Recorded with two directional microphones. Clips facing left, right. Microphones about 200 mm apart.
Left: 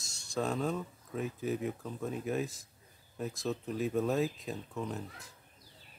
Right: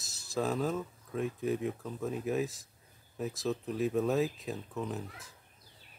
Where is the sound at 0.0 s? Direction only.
Centre (ahead or behind).